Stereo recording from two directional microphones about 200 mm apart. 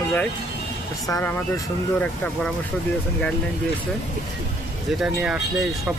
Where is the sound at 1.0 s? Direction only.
15° left (ahead or behind).